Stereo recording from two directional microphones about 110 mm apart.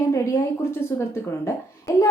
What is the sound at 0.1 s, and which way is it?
A woman's voice, 25° left (ahead or behind).